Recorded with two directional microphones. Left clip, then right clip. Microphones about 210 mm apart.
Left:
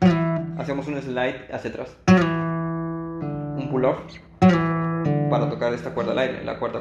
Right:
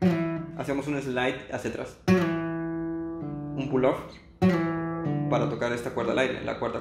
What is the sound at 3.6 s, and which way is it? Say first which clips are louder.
Music: left 2 dB; 15° left (ahead or behind).